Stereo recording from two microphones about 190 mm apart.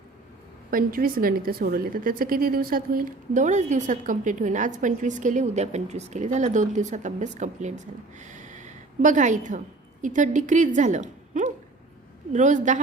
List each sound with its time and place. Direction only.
0.7 s a woman's voice: 50° right (ahead or behind)